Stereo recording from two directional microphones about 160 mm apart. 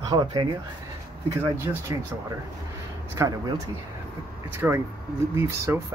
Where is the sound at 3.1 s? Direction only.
20° right (ahead or behind).